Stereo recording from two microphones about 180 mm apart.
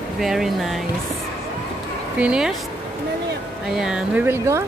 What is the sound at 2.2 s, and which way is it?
Speech, 5° right (ahead or behind).